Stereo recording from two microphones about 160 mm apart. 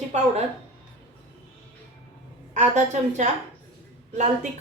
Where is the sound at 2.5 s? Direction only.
50° right (ahead or behind).